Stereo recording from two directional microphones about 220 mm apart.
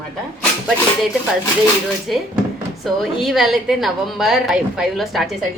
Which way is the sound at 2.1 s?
Centre (ahead or behind).